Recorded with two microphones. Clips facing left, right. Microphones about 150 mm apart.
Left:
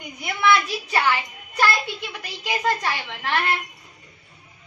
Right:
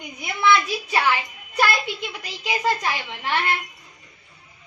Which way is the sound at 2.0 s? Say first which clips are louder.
Right 1 dB; 15° right (ahead or behind).